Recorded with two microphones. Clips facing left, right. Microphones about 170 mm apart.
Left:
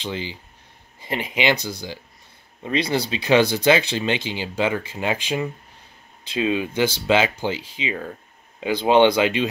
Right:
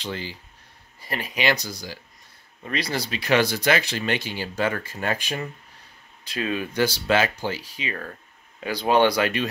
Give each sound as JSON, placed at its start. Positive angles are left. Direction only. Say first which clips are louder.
{"t": 0.0, "sound": "speech", "louder": "left 3 dB", "side_deg": 20}